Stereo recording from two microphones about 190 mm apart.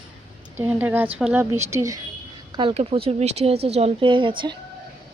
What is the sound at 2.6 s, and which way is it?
Speech, 30° right (ahead or behind).